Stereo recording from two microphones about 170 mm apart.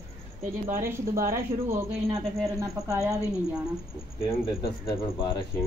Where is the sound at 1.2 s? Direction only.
15° right (ahead or behind).